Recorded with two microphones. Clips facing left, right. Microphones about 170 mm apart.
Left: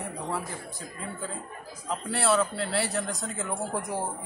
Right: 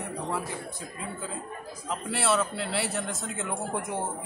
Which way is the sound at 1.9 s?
Centre (ahead or behind).